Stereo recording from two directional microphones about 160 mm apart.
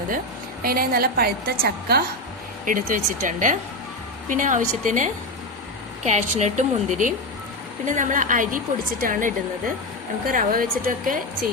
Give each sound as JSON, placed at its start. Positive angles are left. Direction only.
{"t": 0.6, "sound": "a woman's voice", "side_deg": -65}
{"t": 2.6, "sound": "a woman's voice", "side_deg": -55}